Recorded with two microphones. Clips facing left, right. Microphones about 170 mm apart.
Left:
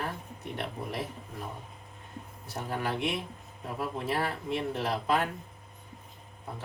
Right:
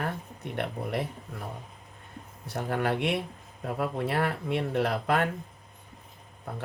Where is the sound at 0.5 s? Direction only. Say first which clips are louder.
Right 5 dB; 65° right (ahead or behind).